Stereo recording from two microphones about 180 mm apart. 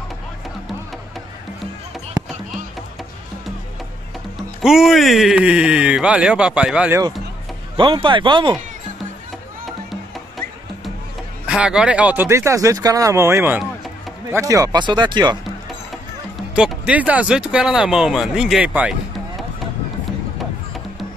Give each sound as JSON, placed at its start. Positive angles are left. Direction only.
{"t": 4.6, "sound": "speech", "side_deg": 0}
{"t": 7.7, "sound": "speech", "side_deg": -30}
{"t": 11.4, "sound": "speech", "side_deg": -5}
{"t": 16.5, "sound": "speech", "side_deg": -5}